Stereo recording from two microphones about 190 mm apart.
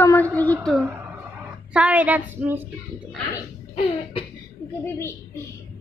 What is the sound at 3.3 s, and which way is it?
Speech, 25° left (ahead or behind).